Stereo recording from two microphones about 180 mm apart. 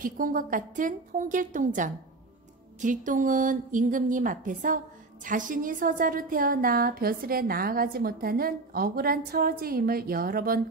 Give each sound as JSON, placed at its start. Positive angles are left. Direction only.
{"t": 0.0, "sound": "a woman's voice", "side_deg": -50}